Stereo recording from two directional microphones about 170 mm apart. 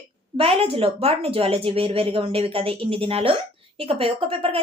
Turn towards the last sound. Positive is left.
turn(degrees=-35)  # may be behind; listen again after turning